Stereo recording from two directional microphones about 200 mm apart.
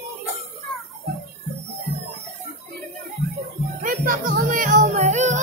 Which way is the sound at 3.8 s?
45° right (ahead or behind).